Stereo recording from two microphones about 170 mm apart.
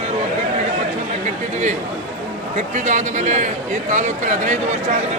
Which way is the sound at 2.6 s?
45° right (ahead or behind).